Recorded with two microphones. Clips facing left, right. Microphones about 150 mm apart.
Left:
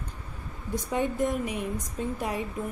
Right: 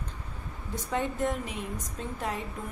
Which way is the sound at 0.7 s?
15° left (ahead or behind).